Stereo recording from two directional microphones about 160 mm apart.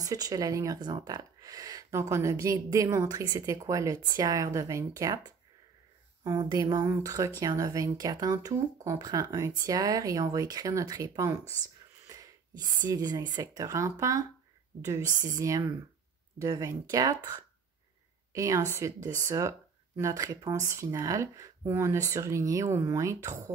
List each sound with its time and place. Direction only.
0.0 s speech: 25° right (ahead or behind)
12.8 s speech: 25° right (ahead or behind)
15.2 s speech: 20° right (ahead or behind)
18.3 s speech: 20° right (ahead or behind)